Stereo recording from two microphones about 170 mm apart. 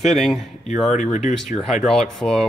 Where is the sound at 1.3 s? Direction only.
5° left (ahead or behind).